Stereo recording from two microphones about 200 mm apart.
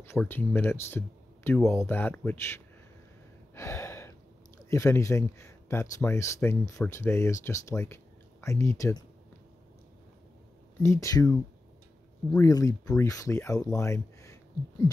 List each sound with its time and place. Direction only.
0.0 s speech: 10° left (ahead or behind)
3.5 s gasp: 15° left (ahead or behind)
4.6 s speech: 15° left (ahead or behind)
10.8 s speech: 15° left (ahead or behind)